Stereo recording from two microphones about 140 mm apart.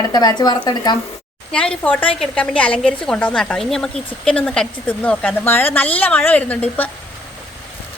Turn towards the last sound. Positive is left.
turn(degrees=10)  # may be behind; listen again after turning